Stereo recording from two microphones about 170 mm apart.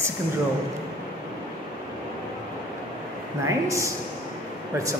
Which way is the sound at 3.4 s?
20° right (ahead or behind).